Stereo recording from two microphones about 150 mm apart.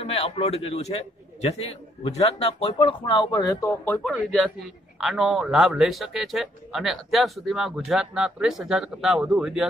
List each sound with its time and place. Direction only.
0.0 s a man's voice: 40° left (ahead or behind)
3.6 s speech: 15° left (ahead or behind)
5.0 s speech: centre (ahead or behind)